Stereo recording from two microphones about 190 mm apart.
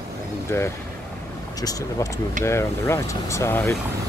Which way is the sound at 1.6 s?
20° left (ahead or behind).